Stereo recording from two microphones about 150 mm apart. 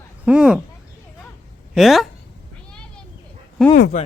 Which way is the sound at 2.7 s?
5° left (ahead or behind).